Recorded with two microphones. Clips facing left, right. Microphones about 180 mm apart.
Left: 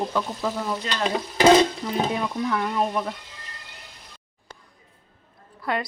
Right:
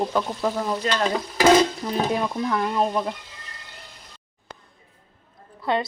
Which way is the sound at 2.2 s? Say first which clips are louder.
Right 1 dB; 35° right (ahead or behind).